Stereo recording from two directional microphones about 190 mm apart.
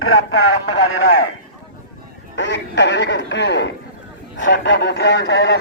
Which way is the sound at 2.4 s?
70° left (ahead or behind).